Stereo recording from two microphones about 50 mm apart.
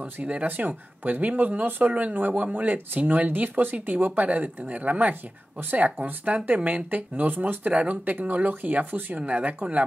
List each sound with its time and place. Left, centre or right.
0.0 s speech: right